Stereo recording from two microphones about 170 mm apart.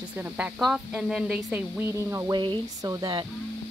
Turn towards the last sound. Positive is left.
turn(degrees=-25)  # may be behind; listen again after turning